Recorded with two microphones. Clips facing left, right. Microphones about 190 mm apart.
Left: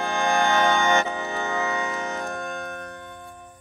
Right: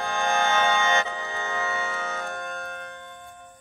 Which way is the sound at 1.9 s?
40° left (ahead or behind).